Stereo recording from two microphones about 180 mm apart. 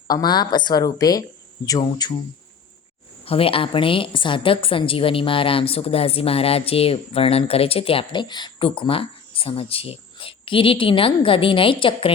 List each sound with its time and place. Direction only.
0.1 s speech: 20° left (ahead or behind)
3.2 s a woman's voice: 30° left (ahead or behind)